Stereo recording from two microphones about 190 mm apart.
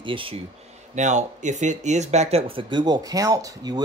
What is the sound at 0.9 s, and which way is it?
Speech, 40° right (ahead or behind).